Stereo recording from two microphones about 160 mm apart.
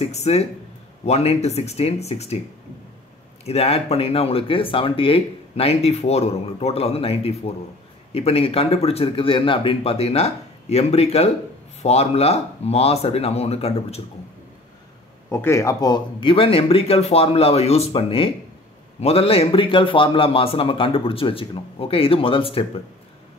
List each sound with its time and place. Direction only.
0.0 s speech: 40° left (ahead or behind)
3.4 s speech: 40° left (ahead or behind)
15.2 s speech: 15° left (ahead or behind); by 22.7 s 35° left (ahead or behind)